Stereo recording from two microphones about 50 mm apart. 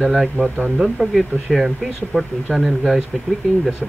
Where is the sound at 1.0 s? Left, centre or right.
Right.